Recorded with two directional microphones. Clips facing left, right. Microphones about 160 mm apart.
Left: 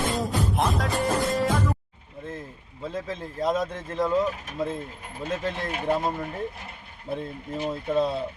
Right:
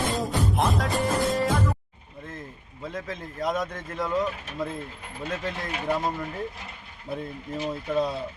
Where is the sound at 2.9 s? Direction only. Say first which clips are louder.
Left 3 dB; 30° left (ahead or behind).